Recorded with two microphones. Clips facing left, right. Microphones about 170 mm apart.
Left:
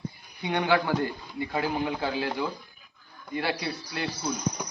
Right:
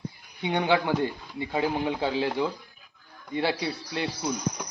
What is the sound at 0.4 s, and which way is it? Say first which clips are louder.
Speech: right 1 dB; 20° right (ahead or behind).